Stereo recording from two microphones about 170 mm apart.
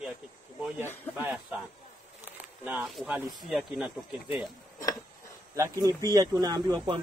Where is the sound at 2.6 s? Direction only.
5° right (ahead or behind).